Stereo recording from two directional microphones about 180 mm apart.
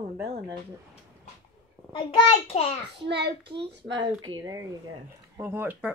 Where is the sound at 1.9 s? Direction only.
30° left (ahead or behind).